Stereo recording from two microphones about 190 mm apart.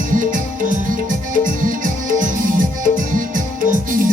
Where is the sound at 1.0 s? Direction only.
45° right (ahead or behind).